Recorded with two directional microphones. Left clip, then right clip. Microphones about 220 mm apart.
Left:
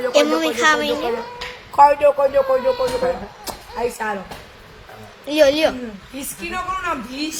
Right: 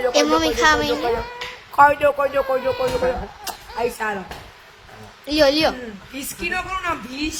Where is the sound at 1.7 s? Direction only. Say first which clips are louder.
Left 2 dB; 20° right (ahead or behind).